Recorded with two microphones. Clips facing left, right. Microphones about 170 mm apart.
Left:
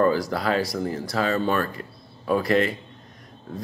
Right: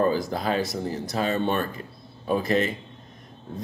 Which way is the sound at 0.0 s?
20° right (ahead or behind).